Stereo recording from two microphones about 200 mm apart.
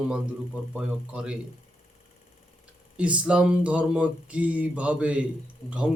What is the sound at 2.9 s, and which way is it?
Speech, 5° right (ahead or behind).